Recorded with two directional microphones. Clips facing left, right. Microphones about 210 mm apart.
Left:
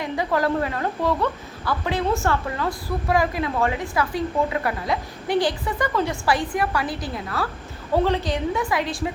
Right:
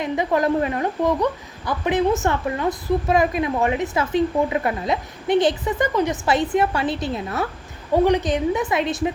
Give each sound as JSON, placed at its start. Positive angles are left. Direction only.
{"t": 0.0, "sound": "speech", "side_deg": -20}